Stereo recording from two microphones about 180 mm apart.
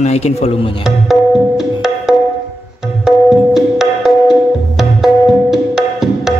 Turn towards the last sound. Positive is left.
turn(degrees=0)  # may be behind; listen again after turning